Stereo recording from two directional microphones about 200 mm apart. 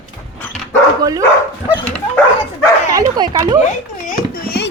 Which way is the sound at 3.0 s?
20° right (ahead or behind).